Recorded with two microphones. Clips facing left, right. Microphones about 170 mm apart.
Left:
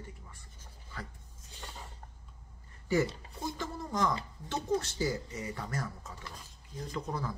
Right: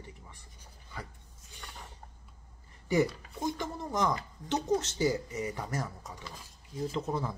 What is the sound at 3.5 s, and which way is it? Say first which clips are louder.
Speech: right 2 dB; 20° right (ahead or behind).